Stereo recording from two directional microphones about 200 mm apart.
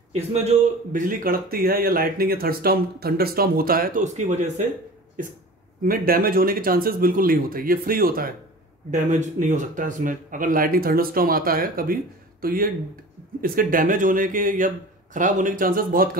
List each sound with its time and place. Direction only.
0.1 s speech: 35° right (ahead or behind)
5.9 s a man's voice: 45° right (ahead or behind)